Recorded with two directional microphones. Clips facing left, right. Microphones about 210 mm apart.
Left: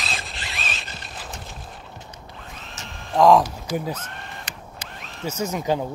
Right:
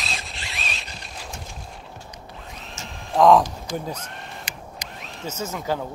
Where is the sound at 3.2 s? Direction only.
Centre (ahead or behind).